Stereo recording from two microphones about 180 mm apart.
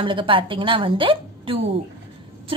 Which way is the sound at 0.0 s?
30° right (ahead or behind).